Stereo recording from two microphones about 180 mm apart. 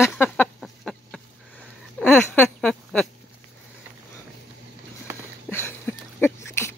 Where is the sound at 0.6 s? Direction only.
Centre (ahead or behind).